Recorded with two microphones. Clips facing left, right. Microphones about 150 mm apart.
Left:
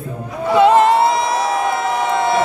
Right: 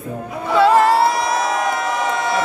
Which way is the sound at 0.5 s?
20° left (ahead or behind).